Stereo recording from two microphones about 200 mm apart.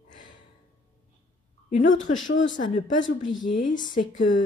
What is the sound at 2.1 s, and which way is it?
Speech, 70° left (ahead or behind).